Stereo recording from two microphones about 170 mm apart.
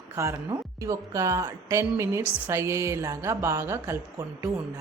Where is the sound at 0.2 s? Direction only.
15° right (ahead or behind).